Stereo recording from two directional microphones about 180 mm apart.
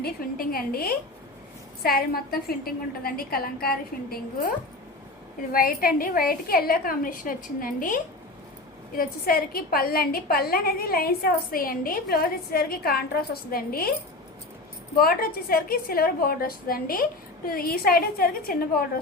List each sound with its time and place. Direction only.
0.0 s a woman's voice: 55° left (ahead or behind)
5.5 s a woman's voice: 55° left (ahead or behind)
14.9 s a woman's voice: 55° left (ahead or behind)